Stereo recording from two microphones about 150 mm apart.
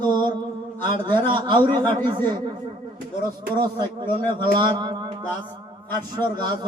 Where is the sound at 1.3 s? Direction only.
30° right (ahead or behind).